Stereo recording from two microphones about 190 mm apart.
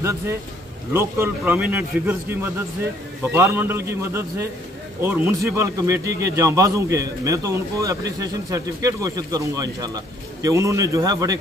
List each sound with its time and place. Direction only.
0.0 s speech: 15° right (ahead or behind)